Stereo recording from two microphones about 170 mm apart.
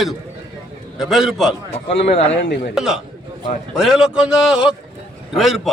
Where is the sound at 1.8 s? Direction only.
35° left (ahead or behind).